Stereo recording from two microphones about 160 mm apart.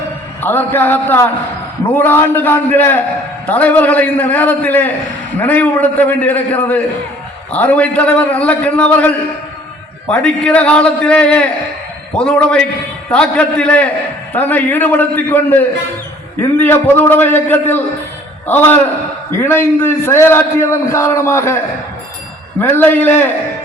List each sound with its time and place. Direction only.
0.4 s a man's voice: 10° left (ahead or behind)
22.6 s a man's voice: 10° left (ahead or behind)